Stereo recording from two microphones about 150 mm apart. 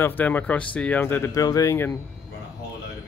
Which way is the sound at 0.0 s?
10° left (ahead or behind).